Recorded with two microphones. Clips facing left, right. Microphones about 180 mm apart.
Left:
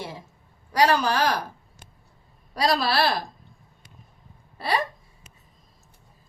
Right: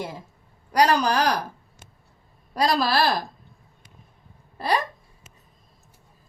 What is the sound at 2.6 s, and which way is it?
Speech, 45° right (ahead or behind).